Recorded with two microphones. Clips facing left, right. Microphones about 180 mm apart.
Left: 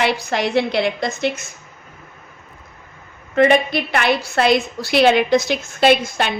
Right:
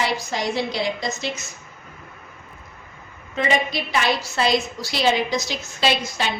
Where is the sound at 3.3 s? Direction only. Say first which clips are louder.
Left 8 dB; 60° left (ahead or behind).